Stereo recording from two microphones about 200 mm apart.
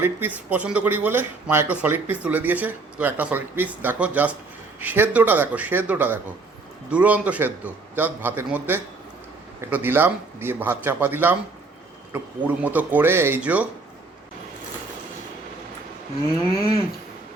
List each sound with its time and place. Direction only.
0.0 s speech: 10° right (ahead or behind)